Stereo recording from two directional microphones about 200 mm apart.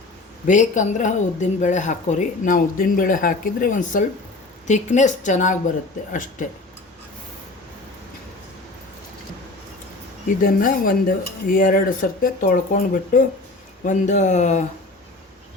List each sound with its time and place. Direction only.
0.4 s speech: 40° left (ahead or behind)
10.2 s speech: 45° left (ahead or behind)